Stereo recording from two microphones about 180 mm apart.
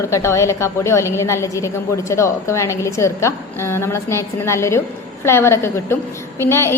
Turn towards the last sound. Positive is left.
turn(degrees=15)  # may be behind; listen again after turning